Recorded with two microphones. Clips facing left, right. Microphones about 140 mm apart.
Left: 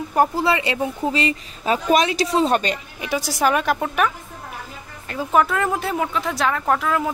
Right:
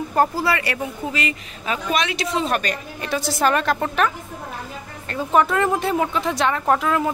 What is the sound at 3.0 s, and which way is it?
A woman's voice, 10° left (ahead or behind).